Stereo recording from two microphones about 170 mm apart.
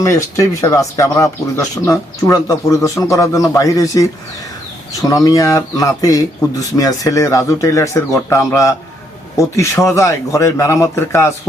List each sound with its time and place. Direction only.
0.0 s speech: 20° left (ahead or behind)